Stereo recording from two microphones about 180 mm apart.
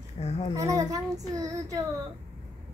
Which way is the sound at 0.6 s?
20° right (ahead or behind).